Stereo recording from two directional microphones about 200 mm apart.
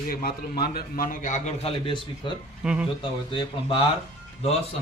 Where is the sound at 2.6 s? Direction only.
5° right (ahead or behind).